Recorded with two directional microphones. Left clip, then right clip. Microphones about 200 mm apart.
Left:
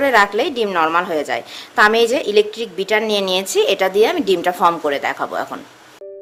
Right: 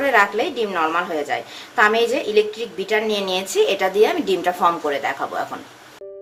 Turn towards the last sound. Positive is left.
turn(degrees=50)  # may be behind; listen again after turning